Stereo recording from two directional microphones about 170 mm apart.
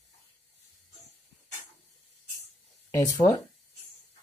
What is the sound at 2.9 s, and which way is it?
Speech, 20° left (ahead or behind).